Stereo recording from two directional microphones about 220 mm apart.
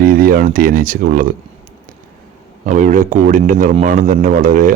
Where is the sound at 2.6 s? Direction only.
35° right (ahead or behind).